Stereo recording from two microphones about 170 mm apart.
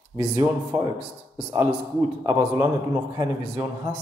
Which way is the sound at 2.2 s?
15° right (ahead or behind).